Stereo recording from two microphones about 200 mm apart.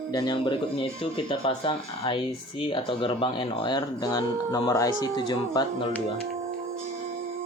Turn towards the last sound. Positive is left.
turn(degrees=25)  # may be behind; listen again after turning